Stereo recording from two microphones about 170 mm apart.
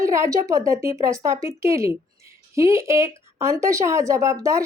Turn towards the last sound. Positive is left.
turn(degrees=-15)  # may be behind; listen again after turning